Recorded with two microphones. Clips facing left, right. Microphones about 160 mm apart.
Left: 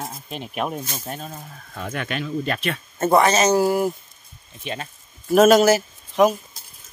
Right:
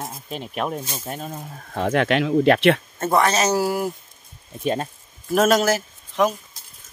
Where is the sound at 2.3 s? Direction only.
70° right (ahead or behind).